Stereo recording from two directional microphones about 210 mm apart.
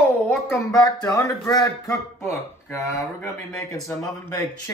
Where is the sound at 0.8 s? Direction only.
20° left (ahead or behind).